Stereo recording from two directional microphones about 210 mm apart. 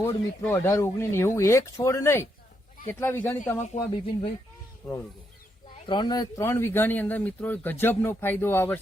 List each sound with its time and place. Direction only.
0.4 s speech: 10° left (ahead or behind)
3.6 s speech: 25° left (ahead or behind)
4.8 s speech: centre (ahead or behind)
5.8 s speech: 20° left (ahead or behind)